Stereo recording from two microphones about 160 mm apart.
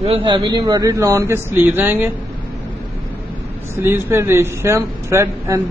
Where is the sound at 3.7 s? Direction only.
15° right (ahead or behind).